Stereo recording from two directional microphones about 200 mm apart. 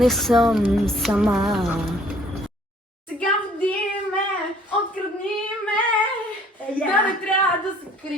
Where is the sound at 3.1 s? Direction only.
5° left (ahead or behind).